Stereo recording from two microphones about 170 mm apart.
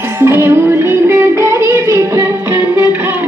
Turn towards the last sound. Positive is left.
turn(degrees=-10)  # may be behind; listen again after turning